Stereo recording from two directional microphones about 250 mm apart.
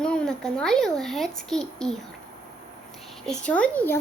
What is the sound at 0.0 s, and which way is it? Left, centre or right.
A child's voice, centre.